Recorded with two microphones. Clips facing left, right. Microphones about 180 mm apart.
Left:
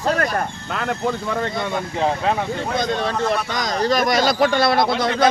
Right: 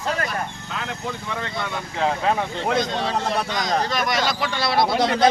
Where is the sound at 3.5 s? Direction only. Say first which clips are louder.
Left 3 dB; 40° left (ahead or behind).